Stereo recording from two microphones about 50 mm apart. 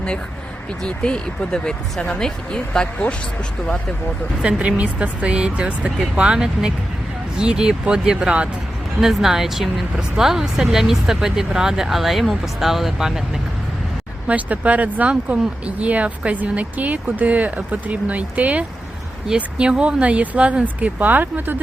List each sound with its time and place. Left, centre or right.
0.8 s speech: centre
4.4 s speech: right
9.0 s speech: centre
14.3 s speech: right